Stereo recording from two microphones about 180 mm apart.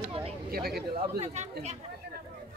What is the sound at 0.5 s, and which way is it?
Speech, 60° right (ahead or behind).